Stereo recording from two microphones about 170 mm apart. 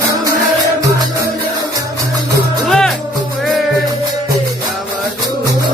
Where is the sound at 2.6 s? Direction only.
5° left (ahead or behind).